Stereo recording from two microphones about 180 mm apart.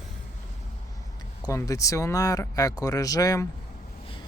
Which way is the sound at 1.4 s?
20° left (ahead or behind).